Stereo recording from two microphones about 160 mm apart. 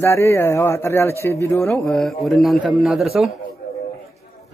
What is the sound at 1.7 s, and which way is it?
Speech, 5° left (ahead or behind).